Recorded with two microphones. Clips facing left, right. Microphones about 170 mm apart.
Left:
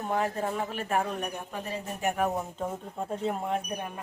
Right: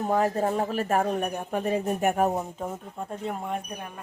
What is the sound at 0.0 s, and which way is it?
Speech, 40° right (ahead or behind).